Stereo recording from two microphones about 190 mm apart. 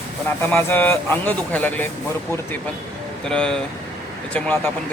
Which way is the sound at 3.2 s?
5° left (ahead or behind).